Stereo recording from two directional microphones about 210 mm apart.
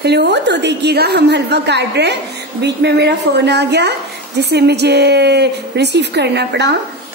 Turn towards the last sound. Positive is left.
turn(degrees=-55)  # may be behind; listen again after turning